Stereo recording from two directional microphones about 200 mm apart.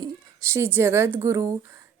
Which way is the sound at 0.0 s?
10° right (ahead or behind).